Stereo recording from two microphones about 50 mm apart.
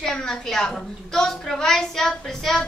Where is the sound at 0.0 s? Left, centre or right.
Centre.